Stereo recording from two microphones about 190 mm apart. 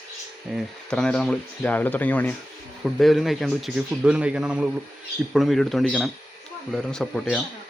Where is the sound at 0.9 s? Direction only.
5° left (ahead or behind).